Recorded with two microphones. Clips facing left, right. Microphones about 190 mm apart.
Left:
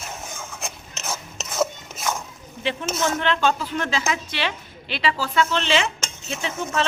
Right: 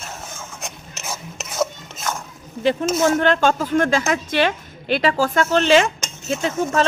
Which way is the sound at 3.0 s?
45° right (ahead or behind).